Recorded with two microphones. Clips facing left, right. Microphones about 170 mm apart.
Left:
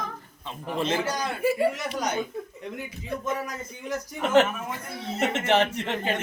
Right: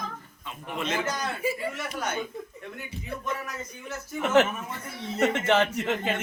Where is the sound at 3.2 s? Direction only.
20° left (ahead or behind).